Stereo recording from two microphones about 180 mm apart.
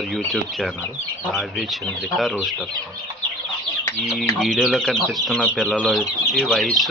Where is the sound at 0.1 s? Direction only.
Centre (ahead or behind).